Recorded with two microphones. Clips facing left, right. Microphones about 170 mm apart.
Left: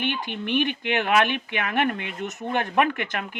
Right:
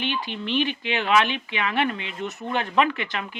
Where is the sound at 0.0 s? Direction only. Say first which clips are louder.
Left 1 dB; 55° left (ahead or behind).